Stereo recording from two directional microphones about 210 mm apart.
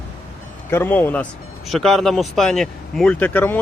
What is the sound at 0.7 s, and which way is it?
A man's voice, 10° left (ahead or behind).